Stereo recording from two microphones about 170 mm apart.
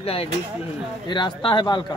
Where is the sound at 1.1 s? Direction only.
25° left (ahead or behind).